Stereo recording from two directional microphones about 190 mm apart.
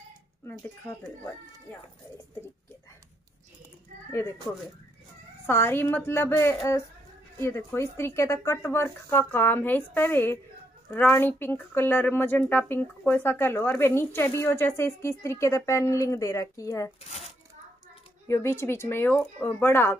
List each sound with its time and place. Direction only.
0.5 s speech: 10° left (ahead or behind)
4.1 s speech: 15° left (ahead or behind)
17.0 s shuffling cards: 35° left (ahead or behind)
18.3 s speech: 15° left (ahead or behind)